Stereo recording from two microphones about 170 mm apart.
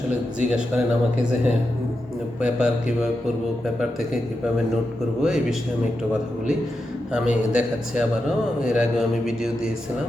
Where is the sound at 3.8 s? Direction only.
Centre (ahead or behind).